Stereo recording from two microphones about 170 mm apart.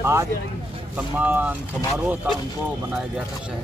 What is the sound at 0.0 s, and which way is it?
Speech, 15° right (ahead or behind).